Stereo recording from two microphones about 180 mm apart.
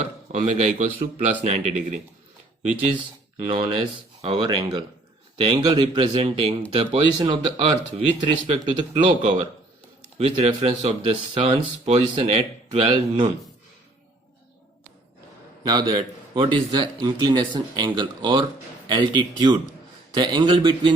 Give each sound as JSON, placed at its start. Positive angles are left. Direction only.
{"t": 0.3, "sound": "speech", "side_deg": -40}
{"t": 3.5, "sound": "a man's voice", "side_deg": -30}
{"t": 7.6, "sound": "speech", "side_deg": -35}
{"t": 8.6, "sound": "a man's voice", "side_deg": -30}
{"t": 9.0, "sound": "speech", "side_deg": -40}
{"t": 15.6, "sound": "a man's voice", "side_deg": -20}